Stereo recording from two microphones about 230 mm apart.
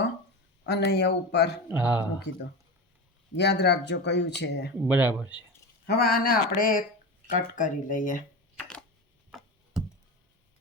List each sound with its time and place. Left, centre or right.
0.6 s speech: left
1.6 s speech: centre
3.3 s speech: left
4.8 s speech: centre
5.8 s speech: left
8.5 s a sound: centre